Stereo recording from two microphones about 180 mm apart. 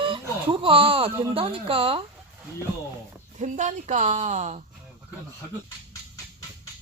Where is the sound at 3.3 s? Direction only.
40° right (ahead or behind).